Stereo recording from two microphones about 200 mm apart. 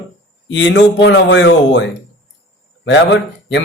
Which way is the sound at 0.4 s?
65° left (ahead or behind).